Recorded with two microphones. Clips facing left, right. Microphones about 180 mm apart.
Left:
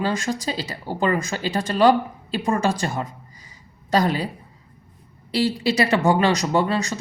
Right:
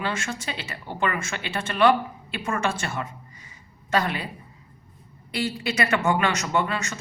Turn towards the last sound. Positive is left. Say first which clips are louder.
# left 5 dB
turn(degrees=35)  # may be behind; listen again after turning